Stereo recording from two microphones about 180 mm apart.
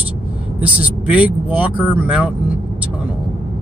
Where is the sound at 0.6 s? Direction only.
5° right (ahead or behind).